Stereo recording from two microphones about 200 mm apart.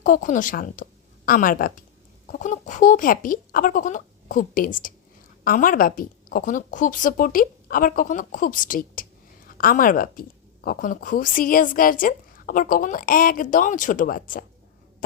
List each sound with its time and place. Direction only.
0.0 s a woman's voice: 40° left (ahead or behind)